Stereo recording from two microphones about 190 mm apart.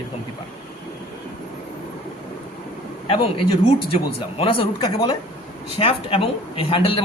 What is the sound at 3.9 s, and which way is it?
A man's voice, 30° left (ahead or behind).